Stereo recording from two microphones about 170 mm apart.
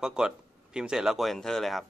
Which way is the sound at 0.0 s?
5° right (ahead or behind).